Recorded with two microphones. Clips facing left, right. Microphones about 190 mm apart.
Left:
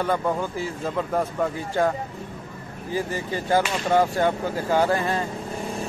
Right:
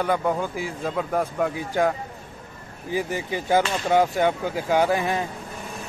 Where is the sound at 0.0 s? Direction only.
10° right (ahead or behind).